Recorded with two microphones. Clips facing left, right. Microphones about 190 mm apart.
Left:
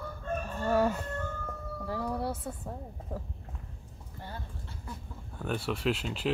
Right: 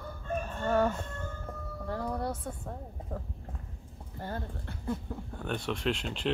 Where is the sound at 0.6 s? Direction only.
10° left (ahead or behind).